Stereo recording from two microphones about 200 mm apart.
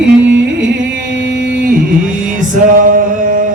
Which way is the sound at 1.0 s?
65° right (ahead or behind).